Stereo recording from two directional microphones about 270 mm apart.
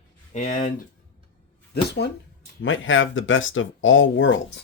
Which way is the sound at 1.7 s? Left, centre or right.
Left.